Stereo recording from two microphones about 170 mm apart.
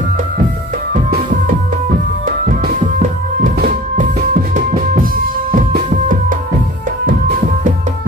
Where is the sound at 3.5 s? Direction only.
50° right (ahead or behind).